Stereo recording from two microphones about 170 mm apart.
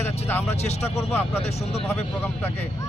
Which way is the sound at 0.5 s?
40° left (ahead or behind).